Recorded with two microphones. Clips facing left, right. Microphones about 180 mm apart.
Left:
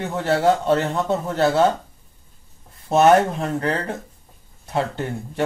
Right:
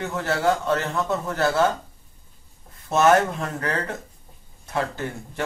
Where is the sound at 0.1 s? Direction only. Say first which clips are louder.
Left 5 dB; 30° left (ahead or behind).